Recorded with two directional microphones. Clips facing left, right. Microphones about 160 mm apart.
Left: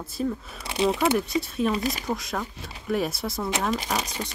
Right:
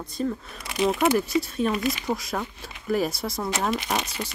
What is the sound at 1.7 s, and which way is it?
Speech, 40° left (ahead or behind).